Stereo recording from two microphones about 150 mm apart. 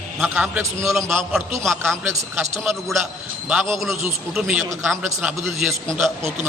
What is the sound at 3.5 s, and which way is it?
A man's voice, centre (ahead or behind).